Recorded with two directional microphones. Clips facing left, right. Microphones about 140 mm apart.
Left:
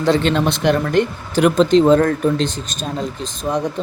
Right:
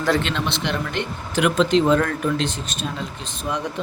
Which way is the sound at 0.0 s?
35° left (ahead or behind).